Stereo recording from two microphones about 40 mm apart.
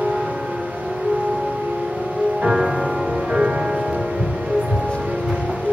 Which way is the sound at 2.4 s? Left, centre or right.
Centre.